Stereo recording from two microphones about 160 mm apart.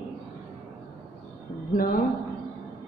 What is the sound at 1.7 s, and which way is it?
Speech, 65° left (ahead or behind).